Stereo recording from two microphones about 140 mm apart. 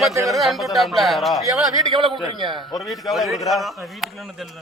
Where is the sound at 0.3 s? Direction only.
Centre (ahead or behind).